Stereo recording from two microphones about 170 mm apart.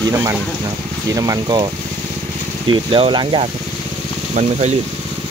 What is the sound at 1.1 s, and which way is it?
Speech, 25° right (ahead or behind).